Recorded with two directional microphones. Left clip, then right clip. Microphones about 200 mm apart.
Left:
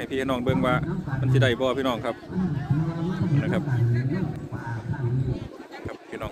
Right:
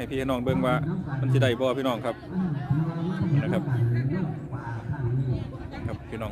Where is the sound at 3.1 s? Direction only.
45° right (ahead or behind).